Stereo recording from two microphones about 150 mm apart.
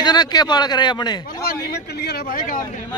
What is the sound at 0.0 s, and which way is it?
A man's voice, 25° left (ahead or behind).